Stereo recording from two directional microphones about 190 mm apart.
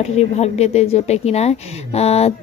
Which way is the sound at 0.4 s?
35° left (ahead or behind).